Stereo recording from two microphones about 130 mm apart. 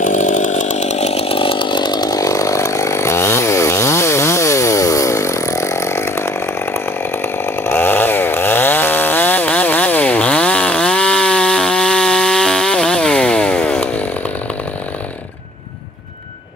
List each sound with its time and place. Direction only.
0.0 s chainsaw: 75° left (ahead or behind); by 14.0 s 10° left (ahead or behind)